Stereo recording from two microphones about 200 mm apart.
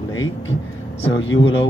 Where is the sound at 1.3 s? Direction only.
75° left (ahead or behind).